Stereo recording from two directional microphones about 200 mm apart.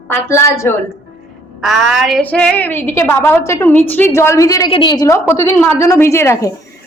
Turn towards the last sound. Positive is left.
turn(degrees=15)  # may be behind; listen again after turning